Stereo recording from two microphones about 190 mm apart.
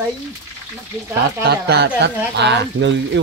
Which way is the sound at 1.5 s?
60° right (ahead or behind).